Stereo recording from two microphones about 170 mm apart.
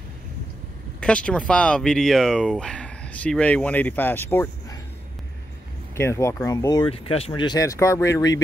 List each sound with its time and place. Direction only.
1.0 s speech: 5° left (ahead or behind)
5.9 s speech: 15° left (ahead or behind)
6.9 s speech: 35° left (ahead or behind); by 8.4 s 20° left (ahead or behind)